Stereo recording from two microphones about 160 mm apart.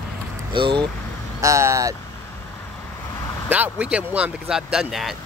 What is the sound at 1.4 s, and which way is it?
Speech, 20° right (ahead or behind).